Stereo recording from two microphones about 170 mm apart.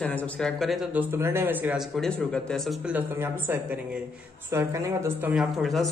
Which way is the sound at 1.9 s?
5° left (ahead or behind).